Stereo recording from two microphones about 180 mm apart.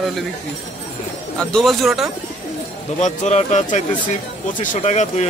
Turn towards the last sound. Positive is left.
turn(degrees=40)  # may be behind; listen again after turning